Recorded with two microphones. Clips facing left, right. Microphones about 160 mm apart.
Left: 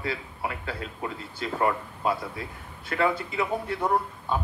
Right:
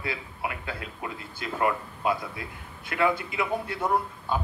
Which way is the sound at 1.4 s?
30° left (ahead or behind).